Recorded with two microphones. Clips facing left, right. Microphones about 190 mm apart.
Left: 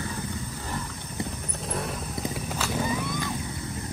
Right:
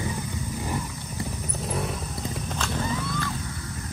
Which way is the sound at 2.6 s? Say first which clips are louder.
Left 1 dB; 10° left (ahead or behind).